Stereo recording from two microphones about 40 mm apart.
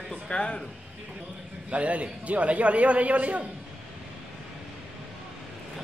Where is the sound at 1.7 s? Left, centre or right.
Right.